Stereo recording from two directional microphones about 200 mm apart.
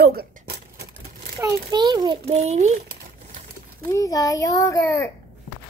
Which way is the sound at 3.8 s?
15° left (ahead or behind).